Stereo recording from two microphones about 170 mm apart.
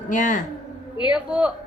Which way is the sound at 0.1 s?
50° left (ahead or behind).